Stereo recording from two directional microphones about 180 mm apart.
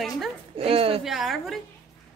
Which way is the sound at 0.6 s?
30° right (ahead or behind).